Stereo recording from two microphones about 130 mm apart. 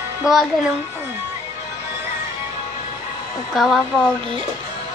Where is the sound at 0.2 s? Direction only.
25° left (ahead or behind).